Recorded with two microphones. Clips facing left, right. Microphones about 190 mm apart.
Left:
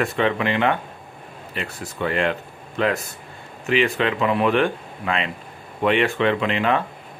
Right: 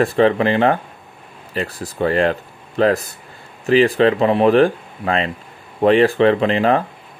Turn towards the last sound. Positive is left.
turn(degrees=-35)  # may be behind; listen again after turning